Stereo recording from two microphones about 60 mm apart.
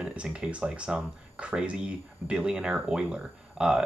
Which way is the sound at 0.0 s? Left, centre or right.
Centre.